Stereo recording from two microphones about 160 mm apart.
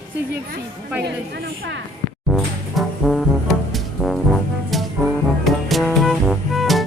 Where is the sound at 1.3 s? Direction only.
80° right.